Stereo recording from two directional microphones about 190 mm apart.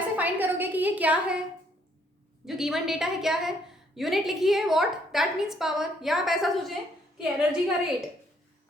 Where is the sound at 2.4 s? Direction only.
Centre (ahead or behind).